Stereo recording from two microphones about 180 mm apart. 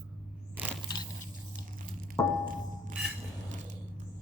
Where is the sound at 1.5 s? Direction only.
50° right (ahead or behind).